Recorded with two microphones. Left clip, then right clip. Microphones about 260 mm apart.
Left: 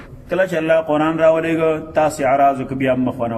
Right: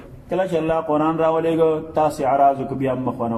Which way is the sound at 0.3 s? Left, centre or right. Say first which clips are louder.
Left 4 dB; left.